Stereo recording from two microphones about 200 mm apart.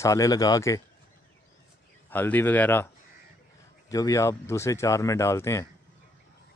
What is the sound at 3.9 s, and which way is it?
Speech, 15° left (ahead or behind).